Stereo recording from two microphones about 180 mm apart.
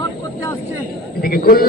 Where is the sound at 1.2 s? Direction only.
55° left (ahead or behind).